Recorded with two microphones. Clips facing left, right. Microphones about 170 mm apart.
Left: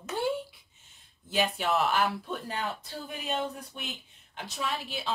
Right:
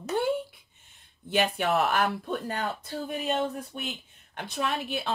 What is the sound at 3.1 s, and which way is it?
Speech, centre (ahead or behind).